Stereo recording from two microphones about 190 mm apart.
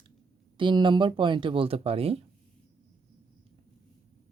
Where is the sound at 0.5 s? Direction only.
25° right (ahead or behind).